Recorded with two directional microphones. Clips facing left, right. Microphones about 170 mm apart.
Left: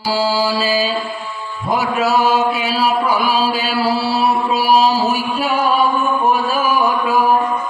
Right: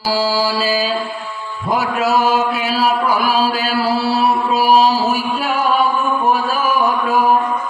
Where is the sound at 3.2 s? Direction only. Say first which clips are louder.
Right 1 dB; 45° right (ahead or behind).